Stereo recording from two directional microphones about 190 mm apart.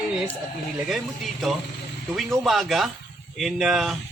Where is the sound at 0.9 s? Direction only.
Centre (ahead or behind).